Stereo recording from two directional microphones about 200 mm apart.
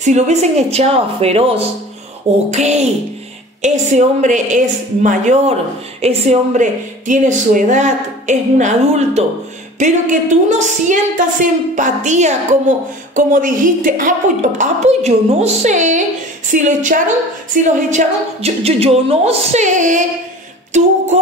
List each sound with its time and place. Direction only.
0.0 s a woman's voice: 35° right (ahead or behind)